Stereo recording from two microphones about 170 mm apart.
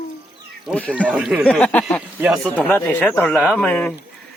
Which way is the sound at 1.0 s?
5° right (ahead or behind).